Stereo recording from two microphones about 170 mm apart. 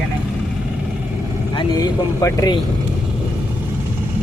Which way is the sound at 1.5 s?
30° left (ahead or behind).